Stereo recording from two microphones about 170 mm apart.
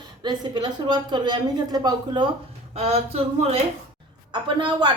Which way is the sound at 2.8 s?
40° right (ahead or behind).